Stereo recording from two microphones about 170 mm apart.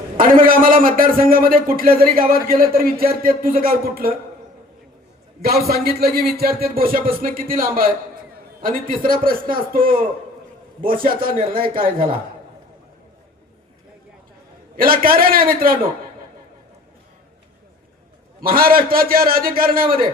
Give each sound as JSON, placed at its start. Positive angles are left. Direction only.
{"t": 0.2, "sound": "speech", "side_deg": -55}
{"t": 5.4, "sound": "speech", "side_deg": -65}
{"t": 14.8, "sound": "speech", "side_deg": -60}
{"t": 18.3, "sound": "speech", "side_deg": -60}